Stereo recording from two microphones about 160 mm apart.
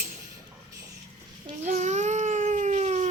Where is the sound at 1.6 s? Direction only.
45° right (ahead or behind).